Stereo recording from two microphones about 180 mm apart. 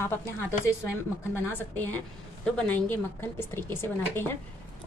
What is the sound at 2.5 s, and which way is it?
Speech, 10° left (ahead or behind).